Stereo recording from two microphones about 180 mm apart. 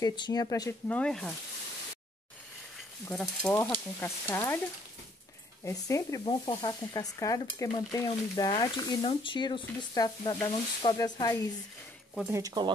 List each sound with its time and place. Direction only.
0.0 s speech: 25° left (ahead or behind); by 1.3 s 5° left (ahead or behind)
3.1 s speech: 5° left (ahead or behind)
5.6 s speech: 15° left (ahead or behind)
6.2 s stir: 25° left (ahead or behind)
12.3 s speech: 20° right (ahead or behind)